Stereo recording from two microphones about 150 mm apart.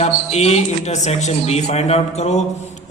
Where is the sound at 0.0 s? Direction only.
45° left (ahead or behind).